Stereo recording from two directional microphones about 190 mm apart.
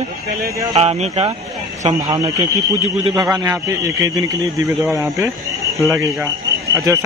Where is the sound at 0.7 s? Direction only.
35° right (ahead or behind).